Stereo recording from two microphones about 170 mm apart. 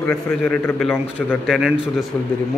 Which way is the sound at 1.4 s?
Centre (ahead or behind).